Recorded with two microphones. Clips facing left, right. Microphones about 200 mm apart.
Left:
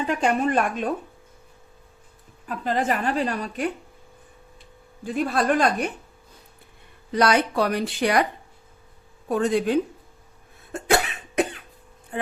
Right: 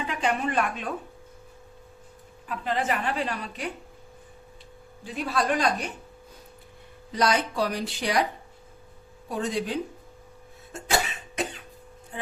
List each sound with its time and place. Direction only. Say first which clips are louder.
0.1 s a woman's voice: left 5 dB; 45° left (ahead or behind)
2.5 s a woman's voice: left 3 dB; 40° left (ahead or behind)
5.0 s a woman's voice: left 5 dB; 50° left (ahead or behind)
7.1 s speech: left 4 dB; 65° left (ahead or behind)
9.3 s speech: left 7 dB; 55° left (ahead or behind)
10.7 s cough: left 5 dB; 60° left (ahead or behind)